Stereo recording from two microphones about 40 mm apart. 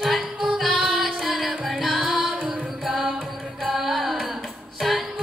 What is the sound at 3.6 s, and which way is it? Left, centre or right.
Music, centre.